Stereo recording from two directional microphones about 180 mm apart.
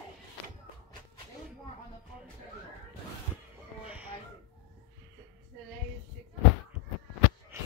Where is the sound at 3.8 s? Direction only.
5° right (ahead or behind).